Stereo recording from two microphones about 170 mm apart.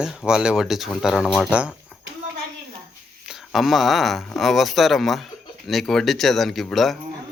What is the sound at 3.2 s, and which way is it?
Speech, centre (ahead or behind).